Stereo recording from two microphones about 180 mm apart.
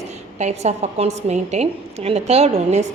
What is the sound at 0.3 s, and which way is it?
A woman's voice, 40° right (ahead or behind).